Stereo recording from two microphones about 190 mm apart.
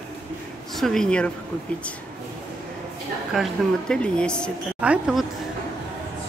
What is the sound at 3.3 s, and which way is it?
A woman's voice, centre (ahead or behind).